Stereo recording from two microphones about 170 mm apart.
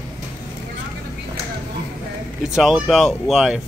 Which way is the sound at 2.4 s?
5° right (ahead or behind).